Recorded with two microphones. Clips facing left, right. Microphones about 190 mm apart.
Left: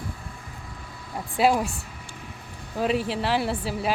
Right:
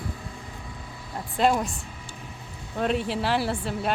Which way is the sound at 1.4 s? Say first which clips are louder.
Left 1 dB; 5° left (ahead or behind).